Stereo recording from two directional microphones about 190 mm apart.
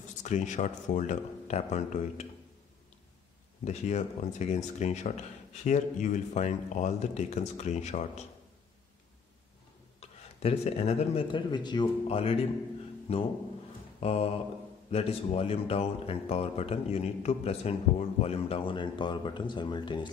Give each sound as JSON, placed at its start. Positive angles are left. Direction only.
{"t": 0.2, "sound": "speech", "side_deg": 40}
{"t": 3.6, "sound": "speech", "side_deg": 40}
{"t": 9.9, "sound": "speech", "side_deg": 35}
{"t": 13.9, "sound": "mantra", "side_deg": 35}
{"t": 14.9, "sound": "speech", "side_deg": 30}